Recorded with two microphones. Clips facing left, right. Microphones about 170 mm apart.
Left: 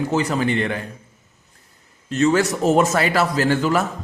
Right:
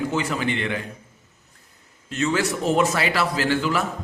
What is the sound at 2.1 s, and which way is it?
A man's voice, 40° left (ahead or behind).